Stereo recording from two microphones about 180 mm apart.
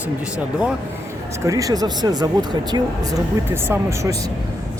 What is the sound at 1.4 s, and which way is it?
Speech, 20° right (ahead or behind).